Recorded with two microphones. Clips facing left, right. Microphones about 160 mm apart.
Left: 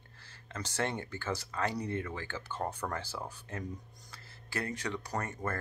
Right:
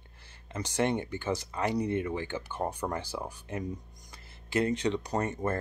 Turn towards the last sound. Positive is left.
turn(degrees=-20)  # may be behind; listen again after turning